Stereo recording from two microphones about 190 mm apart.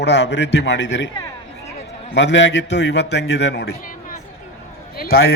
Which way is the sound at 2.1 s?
70° left (ahead or behind).